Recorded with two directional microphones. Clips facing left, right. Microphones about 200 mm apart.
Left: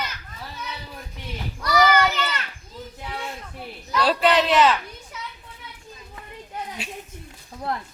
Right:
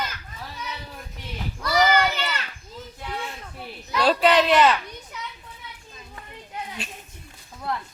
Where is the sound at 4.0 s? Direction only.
Centre (ahead or behind).